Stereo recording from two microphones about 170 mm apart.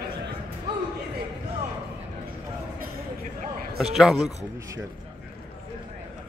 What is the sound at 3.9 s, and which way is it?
Speech, centre (ahead or behind).